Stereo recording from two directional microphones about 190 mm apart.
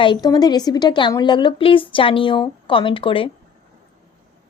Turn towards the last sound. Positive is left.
turn(degrees=25)  # may be behind; listen again after turning